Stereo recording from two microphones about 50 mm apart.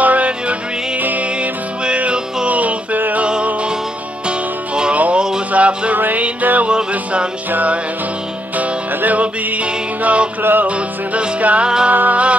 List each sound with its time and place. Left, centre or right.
0.0 s music: right
1.9 s music: right
4.3 s music: centre
4.9 s music: right
10.4 s music: right
11.1 s music: right